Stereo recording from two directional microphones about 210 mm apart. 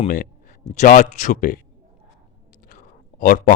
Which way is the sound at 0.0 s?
35° left (ahead or behind).